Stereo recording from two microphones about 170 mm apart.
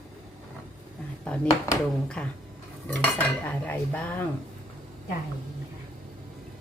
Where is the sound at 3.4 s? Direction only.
10° left (ahead or behind).